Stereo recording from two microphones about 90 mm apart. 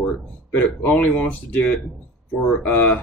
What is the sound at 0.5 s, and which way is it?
Speech, 15° left (ahead or behind).